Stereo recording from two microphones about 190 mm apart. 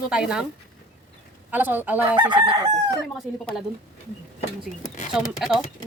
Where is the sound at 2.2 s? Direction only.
25° right (ahead or behind).